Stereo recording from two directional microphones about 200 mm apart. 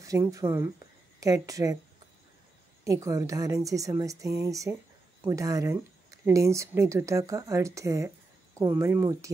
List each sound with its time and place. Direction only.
0.0 s speech: 15° right (ahead or behind)
2.8 s speech: 15° right (ahead or behind)